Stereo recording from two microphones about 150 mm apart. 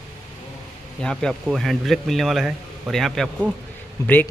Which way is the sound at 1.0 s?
Centre (ahead or behind).